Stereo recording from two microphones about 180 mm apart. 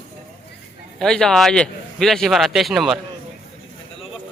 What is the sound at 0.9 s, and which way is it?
A man's voice, 5° left (ahead or behind).